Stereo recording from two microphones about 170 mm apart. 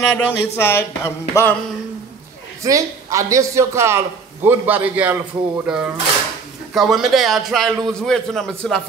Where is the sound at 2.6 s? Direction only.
20° right (ahead or behind).